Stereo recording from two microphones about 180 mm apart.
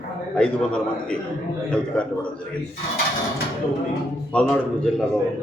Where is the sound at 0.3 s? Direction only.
5° left (ahead or behind).